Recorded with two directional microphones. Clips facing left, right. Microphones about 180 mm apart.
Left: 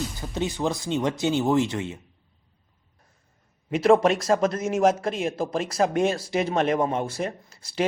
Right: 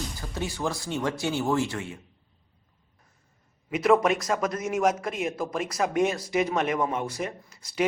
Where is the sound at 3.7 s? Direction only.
30° left (ahead or behind).